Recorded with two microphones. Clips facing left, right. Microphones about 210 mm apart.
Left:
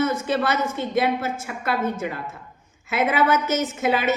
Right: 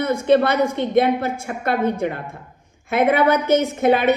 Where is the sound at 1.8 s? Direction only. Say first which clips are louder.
Right 5 dB; 15° right (ahead or behind).